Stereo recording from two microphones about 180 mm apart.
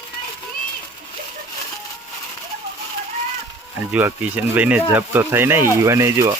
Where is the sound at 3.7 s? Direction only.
10° right (ahead or behind).